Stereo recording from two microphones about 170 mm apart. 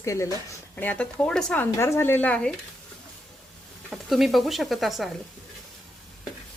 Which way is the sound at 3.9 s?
Centre (ahead or behind).